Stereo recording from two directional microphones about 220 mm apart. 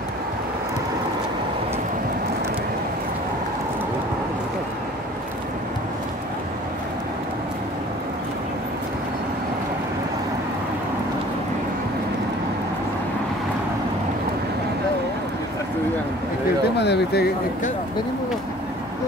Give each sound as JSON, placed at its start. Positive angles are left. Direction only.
{"t": 16.7, "sound": "speech", "side_deg": 50}